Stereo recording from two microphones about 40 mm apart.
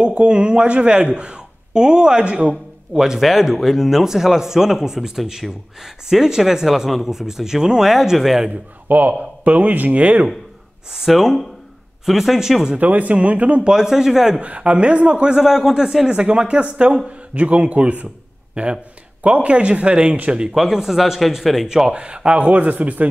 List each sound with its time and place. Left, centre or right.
0.0 s speech: right
2.9 s a man's voice: centre
8.5 s a man's voice: right
11.1 s a man's voice: centre
12.7 s speech: right
13.7 s a man's voice: centre
14.4 s speech: right
15.3 s a man's voice: centre
16.1 s speech: right
20.5 s speech: centre
21.6 s a man's voice: centre
21.9 s speech: right